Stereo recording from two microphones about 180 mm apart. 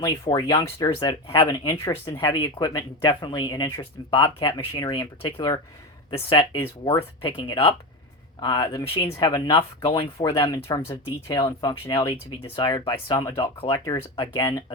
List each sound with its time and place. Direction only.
0.0 s speech: 25° left (ahead or behind)